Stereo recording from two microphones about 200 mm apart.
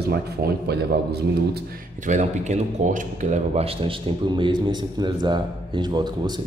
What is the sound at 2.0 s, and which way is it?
Speech, 35° right (ahead or behind).